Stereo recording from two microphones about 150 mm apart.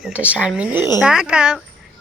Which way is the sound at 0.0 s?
10° right (ahead or behind).